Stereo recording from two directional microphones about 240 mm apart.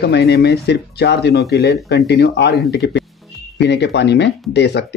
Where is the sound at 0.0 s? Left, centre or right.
Left.